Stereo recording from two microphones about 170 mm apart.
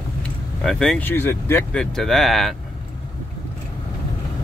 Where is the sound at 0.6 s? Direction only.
5° left (ahead or behind).